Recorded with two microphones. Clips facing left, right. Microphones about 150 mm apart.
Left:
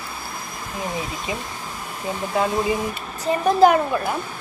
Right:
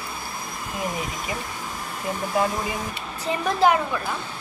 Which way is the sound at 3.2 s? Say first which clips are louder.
Left 5 dB; 40° left (ahead or behind).